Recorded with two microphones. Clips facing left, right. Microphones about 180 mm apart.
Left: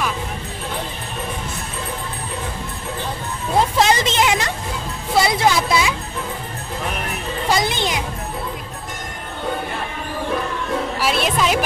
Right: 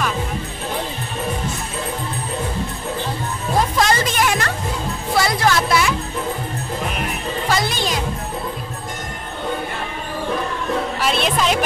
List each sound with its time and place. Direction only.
3.9 s music: 20° left (ahead or behind)
7.4 s music: 15° left (ahead or behind)
11.0 s music: 5° left (ahead or behind)